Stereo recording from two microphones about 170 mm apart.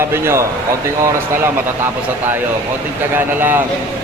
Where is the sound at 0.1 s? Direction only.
15° right (ahead or behind).